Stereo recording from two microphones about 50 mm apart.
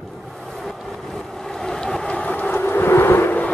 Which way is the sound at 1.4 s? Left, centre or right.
Centre.